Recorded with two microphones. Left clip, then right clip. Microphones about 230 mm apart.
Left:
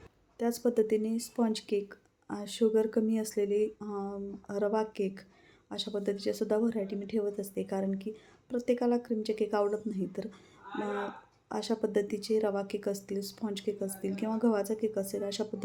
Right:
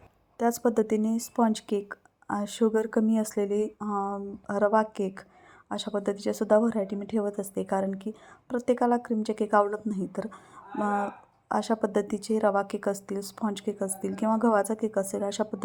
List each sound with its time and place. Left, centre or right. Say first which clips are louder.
0.3 s speech: right 4 dB; right
11.4 s speech: right 6 dB; centre